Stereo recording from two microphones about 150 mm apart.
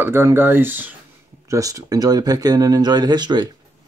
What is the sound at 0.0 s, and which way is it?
Speech, 15° right (ahead or behind).